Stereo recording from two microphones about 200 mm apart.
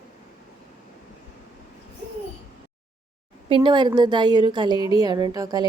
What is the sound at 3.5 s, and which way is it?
A woman's voice, 25° right (ahead or behind).